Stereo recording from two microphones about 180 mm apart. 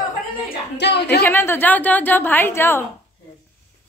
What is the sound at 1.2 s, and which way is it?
A woman's voice, 10° left (ahead or behind).